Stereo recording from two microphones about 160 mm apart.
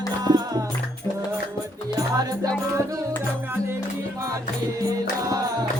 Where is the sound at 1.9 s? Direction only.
25° right (ahead or behind).